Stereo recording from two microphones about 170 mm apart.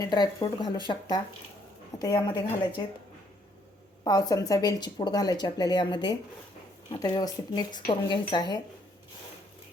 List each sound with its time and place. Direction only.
0.0 s speech: 25° left (ahead or behind)
4.0 s speech: 20° left (ahead or behind)